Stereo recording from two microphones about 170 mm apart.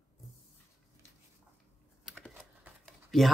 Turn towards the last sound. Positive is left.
turn(degrees=0)  # may be behind; listen again after turning